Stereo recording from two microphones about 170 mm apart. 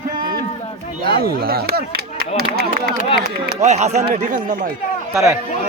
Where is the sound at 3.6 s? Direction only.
40° right (ahead or behind).